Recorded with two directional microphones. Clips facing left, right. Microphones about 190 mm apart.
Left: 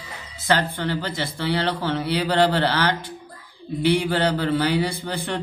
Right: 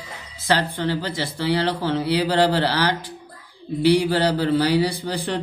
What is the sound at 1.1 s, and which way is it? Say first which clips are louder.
A man's voice: right 2 dB; 30° right (ahead or behind).